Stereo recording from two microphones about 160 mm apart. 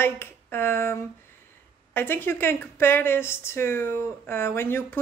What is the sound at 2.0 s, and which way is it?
A woman's voice, 15° left (ahead or behind).